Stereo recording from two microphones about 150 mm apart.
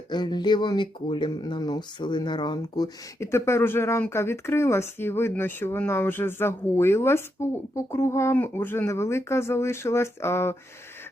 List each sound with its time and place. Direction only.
0.1 s speech: 30° left (ahead or behind)